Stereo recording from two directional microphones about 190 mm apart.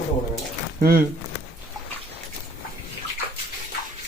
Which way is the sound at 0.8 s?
50° right (ahead or behind).